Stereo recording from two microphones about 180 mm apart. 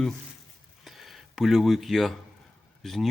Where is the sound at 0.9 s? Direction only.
Centre (ahead or behind).